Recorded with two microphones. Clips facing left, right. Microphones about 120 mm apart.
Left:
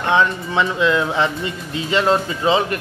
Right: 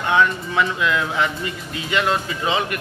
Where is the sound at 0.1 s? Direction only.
25° left (ahead or behind).